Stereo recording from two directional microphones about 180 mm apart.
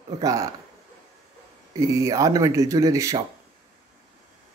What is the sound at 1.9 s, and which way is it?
Speech, 20° right (ahead or behind).